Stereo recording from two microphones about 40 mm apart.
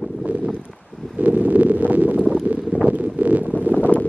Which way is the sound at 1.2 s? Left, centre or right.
Right.